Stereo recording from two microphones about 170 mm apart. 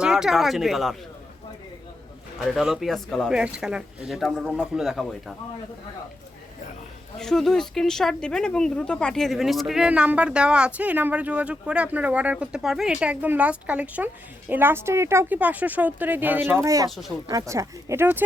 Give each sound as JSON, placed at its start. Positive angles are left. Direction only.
{"t": 0.0, "sound": "speech", "side_deg": -5}
{"t": 2.6, "sound": "speech", "side_deg": 0}
{"t": 7.2, "sound": "a woman's voice", "side_deg": 0}